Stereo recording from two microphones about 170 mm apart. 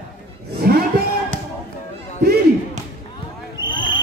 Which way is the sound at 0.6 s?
60° right (ahead or behind).